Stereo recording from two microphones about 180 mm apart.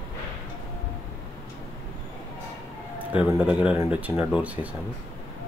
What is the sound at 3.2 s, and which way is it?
Speech, 5° right (ahead or behind).